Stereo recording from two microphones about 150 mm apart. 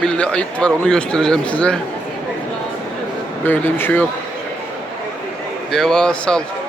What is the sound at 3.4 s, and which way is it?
Speech, 15° left (ahead or behind).